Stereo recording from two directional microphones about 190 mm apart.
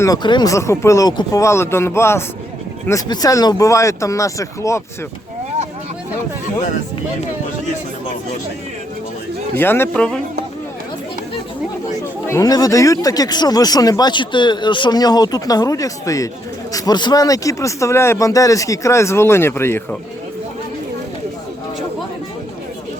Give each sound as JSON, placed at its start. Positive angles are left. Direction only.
{"t": 0.0, "sound": "speech", "side_deg": 20}
{"t": 9.6, "sound": "speech", "side_deg": 10}
{"t": 12.2, "sound": "speech", "side_deg": 15}